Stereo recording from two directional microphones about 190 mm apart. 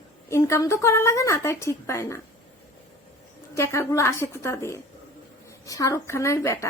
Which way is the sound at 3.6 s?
15° left (ahead or behind).